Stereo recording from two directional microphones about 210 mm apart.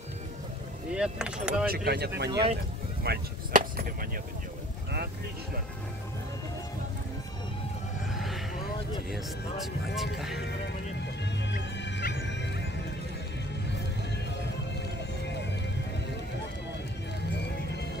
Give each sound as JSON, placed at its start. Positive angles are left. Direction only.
{"t": 0.9, "sound": "speech", "side_deg": -5}
{"t": 1.9, "sound": "speech", "side_deg": -50}
{"t": 8.1, "sound": "a sound", "side_deg": 0}
{"t": 9.1, "sound": "speech", "side_deg": 0}
{"t": 11.5, "sound": "music", "side_deg": 50}